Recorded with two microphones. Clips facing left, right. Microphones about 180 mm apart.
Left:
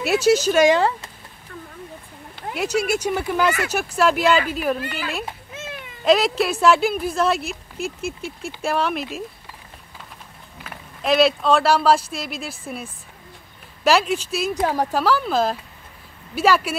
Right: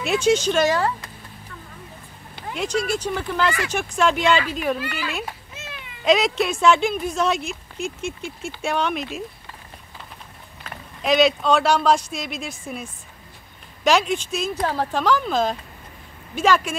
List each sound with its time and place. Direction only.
0.2 s speech: 5° left (ahead or behind)
2.5 s speech: 10° left (ahead or behind)
4.7 s speech: 50° left (ahead or behind)
6.0 s speech: centre (ahead or behind)
10.6 s speech: centre (ahead or behind)
13.8 s speech: 5° left (ahead or behind)